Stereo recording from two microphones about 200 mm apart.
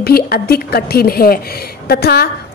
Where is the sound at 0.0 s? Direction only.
50° left (ahead or behind).